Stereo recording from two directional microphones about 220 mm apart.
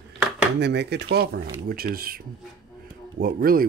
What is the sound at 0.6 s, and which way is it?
Speech, 50° right (ahead or behind).